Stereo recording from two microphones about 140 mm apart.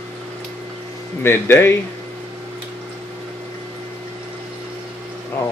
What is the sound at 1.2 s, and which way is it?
Speech, 15° left (ahead or behind).